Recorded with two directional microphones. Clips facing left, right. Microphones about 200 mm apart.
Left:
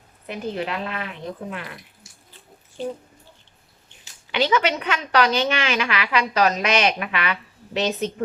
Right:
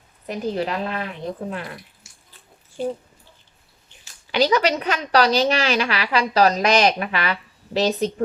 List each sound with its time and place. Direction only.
0.3 s a woman's voice: 40° right (ahead or behind)
4.3 s a woman's voice: 40° right (ahead or behind)